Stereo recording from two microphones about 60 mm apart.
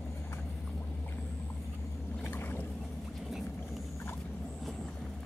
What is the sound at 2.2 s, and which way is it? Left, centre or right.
Boat, left.